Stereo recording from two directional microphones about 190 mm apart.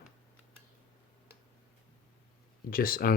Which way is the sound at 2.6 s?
50° left (ahead or behind).